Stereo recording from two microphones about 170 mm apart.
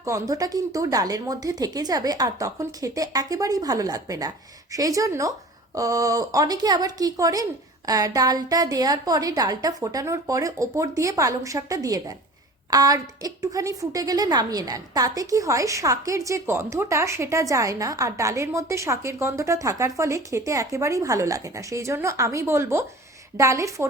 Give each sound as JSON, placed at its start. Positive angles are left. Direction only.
{"t": 0.0, "sound": "a woman's voice", "side_deg": -20}